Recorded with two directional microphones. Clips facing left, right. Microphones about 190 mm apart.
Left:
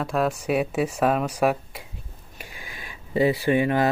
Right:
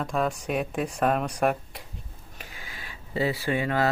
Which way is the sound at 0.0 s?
5° left (ahead or behind).